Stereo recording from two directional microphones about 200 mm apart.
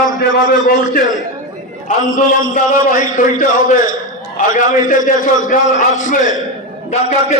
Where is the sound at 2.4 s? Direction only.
40° left (ahead or behind).